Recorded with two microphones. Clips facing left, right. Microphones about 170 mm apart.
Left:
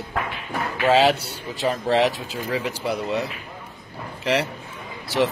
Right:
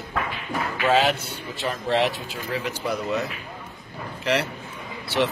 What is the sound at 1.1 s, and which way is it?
Speech, 35° left (ahead or behind).